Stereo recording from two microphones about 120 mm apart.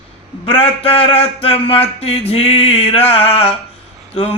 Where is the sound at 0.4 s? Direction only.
50° left (ahead or behind).